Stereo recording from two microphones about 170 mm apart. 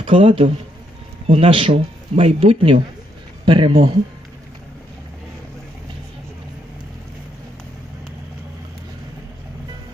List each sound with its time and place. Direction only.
0.0 s speech: 30° right (ahead or behind)